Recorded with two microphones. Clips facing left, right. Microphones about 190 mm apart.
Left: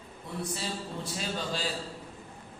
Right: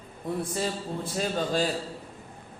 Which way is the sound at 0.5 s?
50° right (ahead or behind).